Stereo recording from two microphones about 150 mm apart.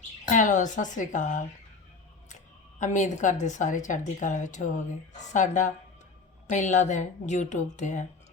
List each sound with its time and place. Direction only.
0.3 s speech: 60° left (ahead or behind)